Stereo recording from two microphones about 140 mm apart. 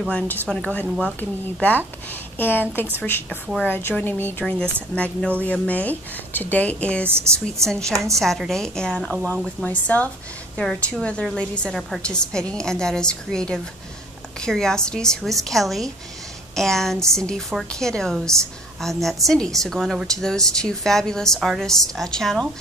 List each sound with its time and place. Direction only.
0.1 s a woman's voice: 10° left (ahead or behind)
7.1 s a woman's voice: 15° right (ahead or behind)
8.2 s a woman's voice: centre (ahead or behind)